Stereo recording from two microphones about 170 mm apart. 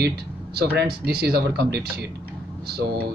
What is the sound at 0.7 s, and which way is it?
Speech, 65° right (ahead or behind).